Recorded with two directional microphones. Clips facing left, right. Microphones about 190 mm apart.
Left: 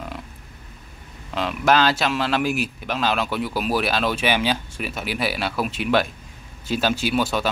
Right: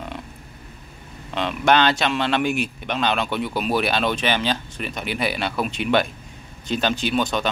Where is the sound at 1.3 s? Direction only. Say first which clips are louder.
Even; centre (ahead or behind).